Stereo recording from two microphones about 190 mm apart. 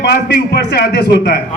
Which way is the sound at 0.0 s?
60° left (ahead or behind).